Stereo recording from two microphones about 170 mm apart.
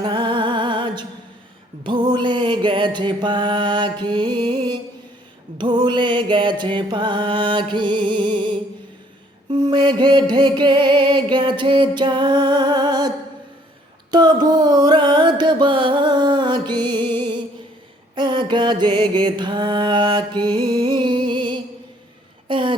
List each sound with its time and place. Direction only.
0.0 s music: 25° right (ahead or behind)
9.5 s music: 25° right (ahead or behind)
14.1 s mantra: 25° right (ahead or behind)
18.1 s music: 25° right (ahead or behind)
22.4 s a sound: 30° right (ahead or behind)